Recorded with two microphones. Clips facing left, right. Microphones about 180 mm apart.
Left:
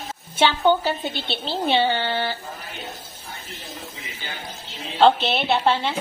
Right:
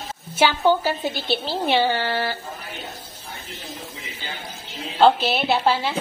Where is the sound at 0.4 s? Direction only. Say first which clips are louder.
Even; 5° right (ahead or behind).